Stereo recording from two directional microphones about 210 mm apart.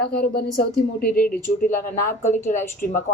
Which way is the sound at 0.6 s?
45° left (ahead or behind).